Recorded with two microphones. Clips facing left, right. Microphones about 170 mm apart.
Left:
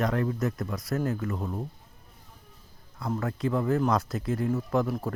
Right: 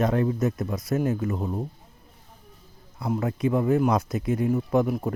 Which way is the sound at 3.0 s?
15° right (ahead or behind).